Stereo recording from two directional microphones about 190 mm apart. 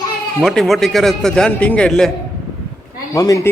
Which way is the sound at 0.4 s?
Centre (ahead or behind).